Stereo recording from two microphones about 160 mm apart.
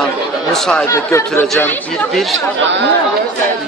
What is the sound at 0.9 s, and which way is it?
Speech, 15° left (ahead or behind).